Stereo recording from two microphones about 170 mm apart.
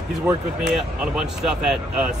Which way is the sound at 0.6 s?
5° right (ahead or behind).